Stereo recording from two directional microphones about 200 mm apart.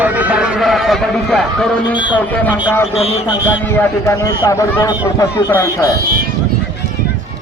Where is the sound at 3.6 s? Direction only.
15° left (ahead or behind).